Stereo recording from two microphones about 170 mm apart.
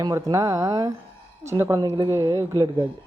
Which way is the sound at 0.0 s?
20° right (ahead or behind).